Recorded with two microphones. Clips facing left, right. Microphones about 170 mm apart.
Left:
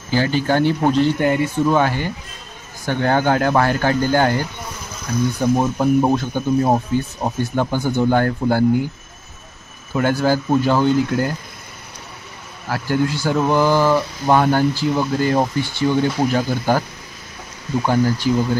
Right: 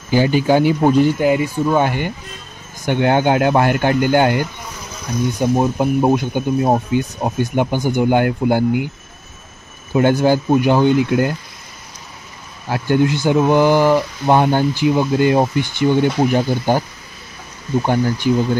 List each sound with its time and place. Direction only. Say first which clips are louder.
0.1 s speech: right 4 dB; 15° right (ahead or behind)
9.9 s speech: right 4 dB; 20° right (ahead or behind)
12.6 s speech: right 4 dB; 20° right (ahead or behind)
17.8 s speech: left 1 dB; 20° right (ahead or behind)